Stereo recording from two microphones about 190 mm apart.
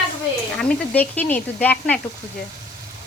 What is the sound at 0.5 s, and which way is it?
Speech, 5° left (ahead or behind).